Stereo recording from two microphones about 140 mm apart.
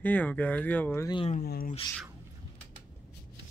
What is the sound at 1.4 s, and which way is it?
Speech, 90° left.